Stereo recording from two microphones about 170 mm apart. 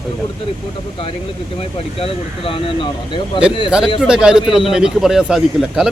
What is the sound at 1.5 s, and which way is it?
Speech, 35° left (ahead or behind).